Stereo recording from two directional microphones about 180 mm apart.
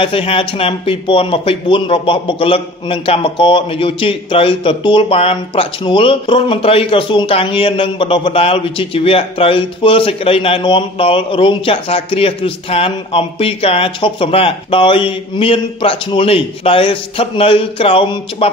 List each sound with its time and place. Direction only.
0.0 s speech: 30° left (ahead or behind)